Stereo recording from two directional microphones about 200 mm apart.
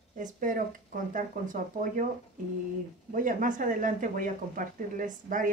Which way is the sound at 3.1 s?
40° right (ahead or behind).